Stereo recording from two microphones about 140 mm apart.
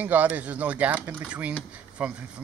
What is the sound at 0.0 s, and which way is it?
Speech, 10° right (ahead or behind).